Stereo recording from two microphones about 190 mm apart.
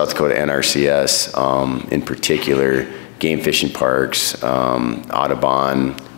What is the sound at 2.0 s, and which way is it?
Speech, 5° left (ahead or behind).